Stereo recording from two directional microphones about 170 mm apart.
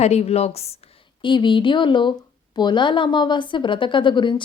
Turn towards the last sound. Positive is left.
turn(degrees=30)  # may be behind; listen again after turning